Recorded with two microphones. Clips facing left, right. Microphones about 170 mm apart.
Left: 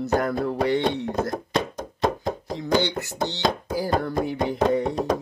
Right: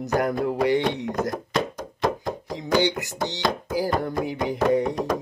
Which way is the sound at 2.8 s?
15° right (ahead or behind).